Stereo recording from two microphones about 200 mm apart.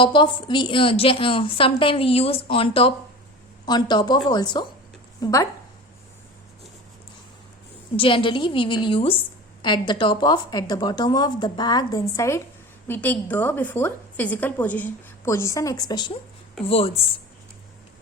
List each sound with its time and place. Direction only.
0.0 s a woman's voice: 25° left (ahead or behind)
7.9 s a woman's voice: 25° left (ahead or behind)